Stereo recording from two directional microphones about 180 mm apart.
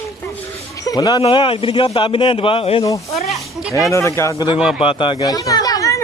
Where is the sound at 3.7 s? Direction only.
15° left (ahead or behind).